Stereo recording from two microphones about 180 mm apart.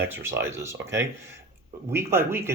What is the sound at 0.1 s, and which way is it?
Speech, 15° right (ahead or behind).